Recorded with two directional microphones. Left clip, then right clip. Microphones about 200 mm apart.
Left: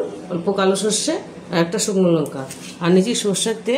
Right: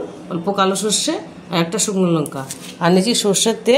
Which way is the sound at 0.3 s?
35° right (ahead or behind).